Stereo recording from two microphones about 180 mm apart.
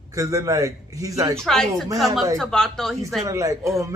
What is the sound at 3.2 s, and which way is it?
Speech, 15° right (ahead or behind).